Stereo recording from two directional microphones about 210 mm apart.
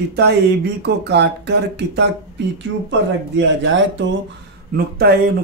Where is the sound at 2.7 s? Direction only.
90° right.